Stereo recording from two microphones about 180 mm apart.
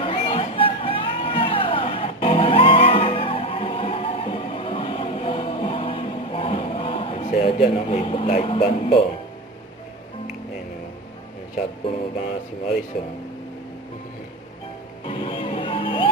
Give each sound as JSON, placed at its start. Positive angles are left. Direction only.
{"t": 0.0, "sound": "music", "side_deg": 30}
{"t": 11.8, "sound": "music", "side_deg": 30}
{"t": 15.0, "sound": "music", "side_deg": 30}